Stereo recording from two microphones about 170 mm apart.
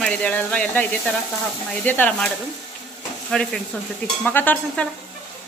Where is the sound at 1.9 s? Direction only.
10° left (ahead or behind).